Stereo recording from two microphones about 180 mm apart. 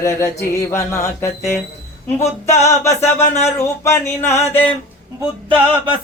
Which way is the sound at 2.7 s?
15° left (ahead or behind).